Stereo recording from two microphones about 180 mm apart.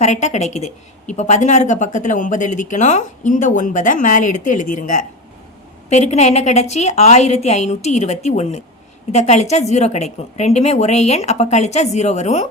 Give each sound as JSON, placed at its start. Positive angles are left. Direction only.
{"t": 0.0, "sound": "a woman's voice", "side_deg": 40}